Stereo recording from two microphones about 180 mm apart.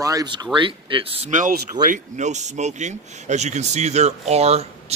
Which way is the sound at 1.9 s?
40° right (ahead or behind).